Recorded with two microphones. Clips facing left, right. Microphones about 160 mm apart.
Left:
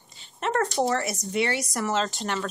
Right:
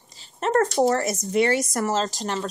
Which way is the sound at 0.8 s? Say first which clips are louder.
Right 5 dB; 40° right (ahead or behind).